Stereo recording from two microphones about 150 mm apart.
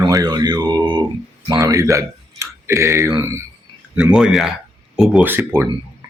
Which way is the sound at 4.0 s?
5° right (ahead or behind).